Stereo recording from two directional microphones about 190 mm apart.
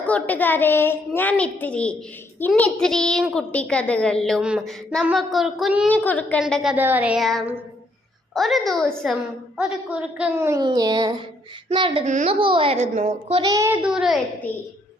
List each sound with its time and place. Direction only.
0.1 s a woman's voice: 10° left (ahead or behind)
5.9 s a woman's voice: 10° left (ahead or behind); by 10.7 s 15° right (ahead or behind)
10.7 s a sound: 20° right (ahead or behind)
12.0 s a child's voice: 35° right (ahead or behind)
13.4 s a child's voice: 15° right (ahead or behind)